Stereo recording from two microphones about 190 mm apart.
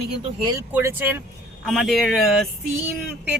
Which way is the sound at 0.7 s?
10° right (ahead or behind).